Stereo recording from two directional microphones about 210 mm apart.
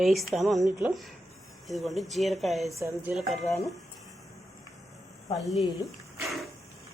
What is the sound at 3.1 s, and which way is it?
Speech, centre (ahead or behind).